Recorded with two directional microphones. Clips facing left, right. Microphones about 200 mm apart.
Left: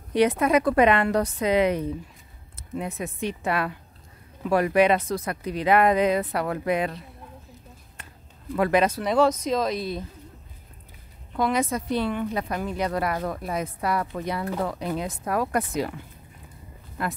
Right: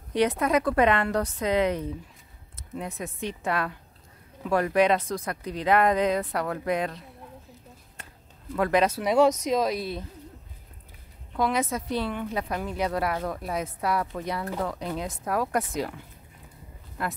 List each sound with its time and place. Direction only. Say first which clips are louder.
0.1 s speech: left 3 dB; 10° left (ahead or behind)
8.5 s speech: left 2 dB; 5° left (ahead or behind)
8.9 s speech: even; 10° right (ahead or behind)
11.3 s speech: left 2 dB; centre (ahead or behind)
17.0 s speech: left 2 dB; centre (ahead or behind)